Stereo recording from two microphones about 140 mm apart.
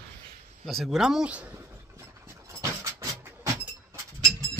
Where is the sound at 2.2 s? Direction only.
20° right (ahead or behind).